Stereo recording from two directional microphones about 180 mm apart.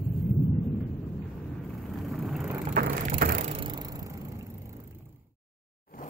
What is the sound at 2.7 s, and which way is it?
Wood, 50° right (ahead or behind).